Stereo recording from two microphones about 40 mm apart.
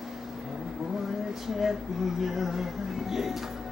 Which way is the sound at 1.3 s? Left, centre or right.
Centre.